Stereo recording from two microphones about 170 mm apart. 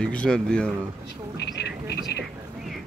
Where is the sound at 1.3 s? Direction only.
80° left.